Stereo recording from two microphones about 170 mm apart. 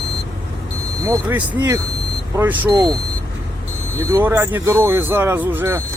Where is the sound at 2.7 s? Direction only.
25° right (ahead or behind).